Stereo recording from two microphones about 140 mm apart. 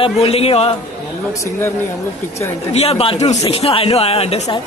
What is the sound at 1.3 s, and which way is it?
Speech, 20° left (ahead or behind).